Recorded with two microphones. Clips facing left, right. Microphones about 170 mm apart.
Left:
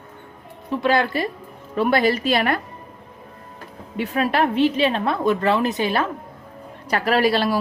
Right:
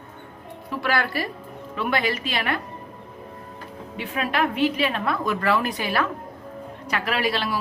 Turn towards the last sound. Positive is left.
turn(degrees=40)  # may be behind; listen again after turning